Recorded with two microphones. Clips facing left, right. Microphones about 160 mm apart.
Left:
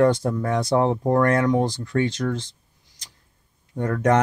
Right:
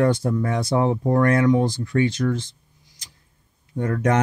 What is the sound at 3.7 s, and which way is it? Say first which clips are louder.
Speech: left 1 dB; 40° left (ahead or behind).